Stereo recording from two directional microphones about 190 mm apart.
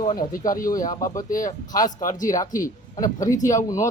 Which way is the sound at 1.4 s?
20° left (ahead or behind).